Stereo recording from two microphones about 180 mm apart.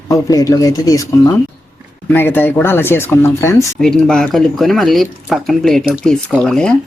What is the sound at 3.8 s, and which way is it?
Speech, 5° left (ahead or behind).